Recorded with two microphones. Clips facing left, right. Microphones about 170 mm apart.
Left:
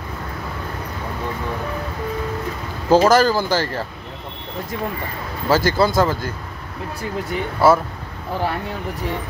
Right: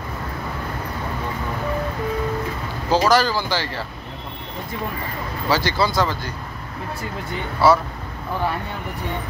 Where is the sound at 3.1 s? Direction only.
45° left (ahead or behind).